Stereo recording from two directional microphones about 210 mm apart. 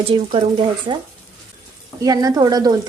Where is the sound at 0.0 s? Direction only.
25° right (ahead or behind).